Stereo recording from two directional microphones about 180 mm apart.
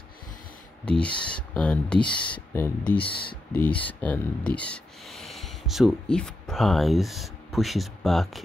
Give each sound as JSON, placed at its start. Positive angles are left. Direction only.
{"t": 0.8, "sound": "speech", "side_deg": 5}